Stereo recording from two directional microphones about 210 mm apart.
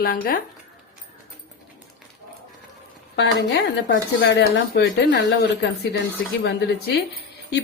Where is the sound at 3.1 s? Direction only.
55° left (ahead or behind).